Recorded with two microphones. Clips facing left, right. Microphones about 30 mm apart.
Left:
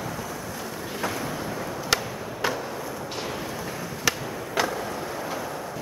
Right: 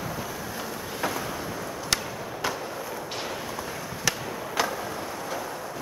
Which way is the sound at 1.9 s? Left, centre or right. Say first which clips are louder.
Left 3 dB; centre.